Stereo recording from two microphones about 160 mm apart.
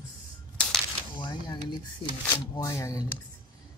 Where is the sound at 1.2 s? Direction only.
25° left (ahead or behind).